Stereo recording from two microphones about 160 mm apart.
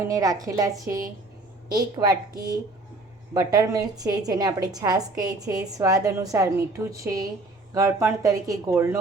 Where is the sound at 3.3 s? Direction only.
20° right (ahead or behind).